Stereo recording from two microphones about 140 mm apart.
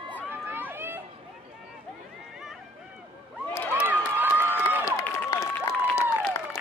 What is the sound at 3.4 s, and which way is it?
Crowd, 15° left (ahead or behind).